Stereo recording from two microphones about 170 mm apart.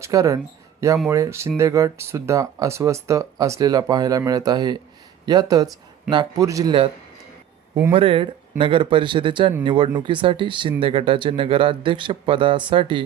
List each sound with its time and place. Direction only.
0.0 s speech: 20° right (ahead or behind)
7.9 s speech: 30° right (ahead or behind)